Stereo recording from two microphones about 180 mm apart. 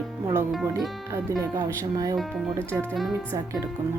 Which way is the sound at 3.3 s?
20° right (ahead or behind).